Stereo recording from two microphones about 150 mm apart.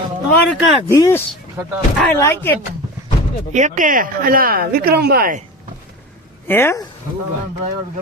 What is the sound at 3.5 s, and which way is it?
Speech, 55° right (ahead or behind).